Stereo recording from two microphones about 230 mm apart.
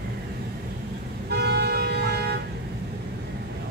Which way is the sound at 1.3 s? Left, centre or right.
Right.